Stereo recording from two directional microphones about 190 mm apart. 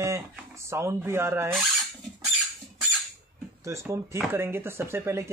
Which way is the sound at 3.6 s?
15° right (ahead or behind).